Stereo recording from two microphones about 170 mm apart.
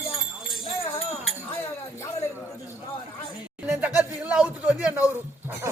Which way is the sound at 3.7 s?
5° right (ahead or behind).